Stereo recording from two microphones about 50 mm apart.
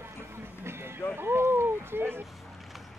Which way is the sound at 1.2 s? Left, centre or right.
Right.